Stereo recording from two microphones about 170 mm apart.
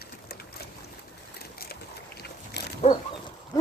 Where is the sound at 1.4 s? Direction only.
65° left (ahead or behind).